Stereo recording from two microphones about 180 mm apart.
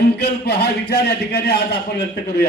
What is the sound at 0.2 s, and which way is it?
A man's voice, 65° left (ahead or behind).